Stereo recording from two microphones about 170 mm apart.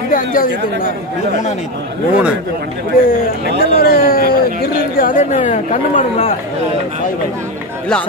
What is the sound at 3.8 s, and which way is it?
Speech, 60° left (ahead or behind).